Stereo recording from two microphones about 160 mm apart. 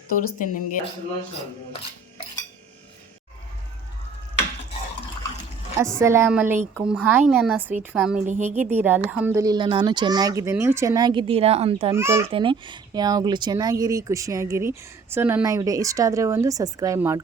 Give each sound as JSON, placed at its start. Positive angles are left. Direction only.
{"t": 0.1, "sound": "speech", "side_deg": 55}
{"t": 6.0, "sound": "speech", "side_deg": -15}
{"t": 11.9, "sound": "speech", "side_deg": -15}
{"t": 12.3, "sound": "speech", "side_deg": -30}